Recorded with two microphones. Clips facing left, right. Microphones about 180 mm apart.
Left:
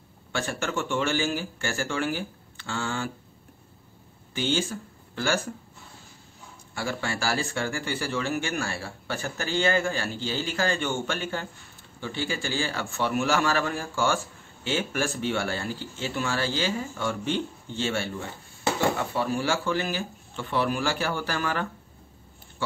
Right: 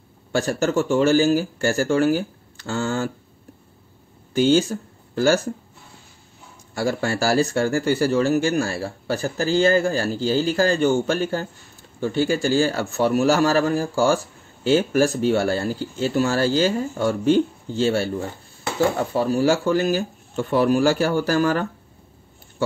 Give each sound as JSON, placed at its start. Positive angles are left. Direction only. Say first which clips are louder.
{"t": 0.3, "sound": "a man's voice", "louder": "right 9 dB", "side_deg": -40}
{"t": 4.3, "sound": "speech", "louder": "right 10 dB", "side_deg": -45}
{"t": 6.7, "sound": "a man's voice", "louder": "right 8 dB", "side_deg": -40}